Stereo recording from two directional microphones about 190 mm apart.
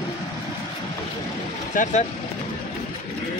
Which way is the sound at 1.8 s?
45° left (ahead or behind).